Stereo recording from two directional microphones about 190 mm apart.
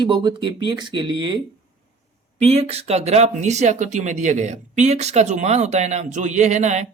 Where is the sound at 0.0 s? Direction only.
25° right (ahead or behind).